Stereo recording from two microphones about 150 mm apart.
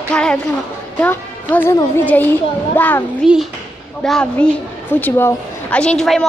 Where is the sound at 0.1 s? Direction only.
5° left (ahead or behind).